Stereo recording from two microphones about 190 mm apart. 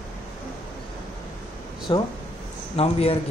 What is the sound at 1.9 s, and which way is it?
A man's voice, 25° left (ahead or behind).